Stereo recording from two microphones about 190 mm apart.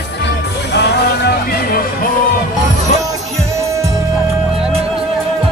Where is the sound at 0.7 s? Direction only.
60° left (ahead or behind).